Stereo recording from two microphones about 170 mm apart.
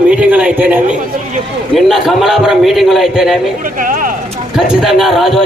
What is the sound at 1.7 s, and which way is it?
A man's voice, centre (ahead or behind).